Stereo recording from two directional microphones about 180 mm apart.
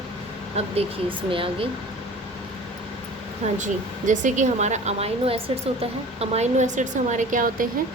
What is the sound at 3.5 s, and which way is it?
A woman's voice, 45° right (ahead or behind).